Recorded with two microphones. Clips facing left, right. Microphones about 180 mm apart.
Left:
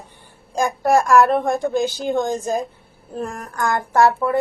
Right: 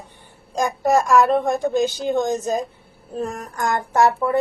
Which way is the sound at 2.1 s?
15° right (ahead or behind).